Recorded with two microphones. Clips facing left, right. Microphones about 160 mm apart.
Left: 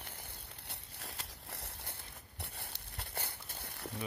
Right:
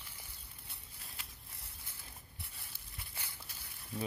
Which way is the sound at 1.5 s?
70° left (ahead or behind).